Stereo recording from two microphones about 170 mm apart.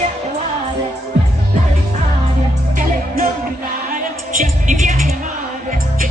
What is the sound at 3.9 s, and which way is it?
Music, 50° right (ahead or behind).